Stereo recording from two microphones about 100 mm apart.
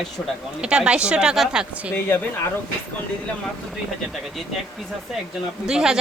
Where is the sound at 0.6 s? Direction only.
10° right (ahead or behind).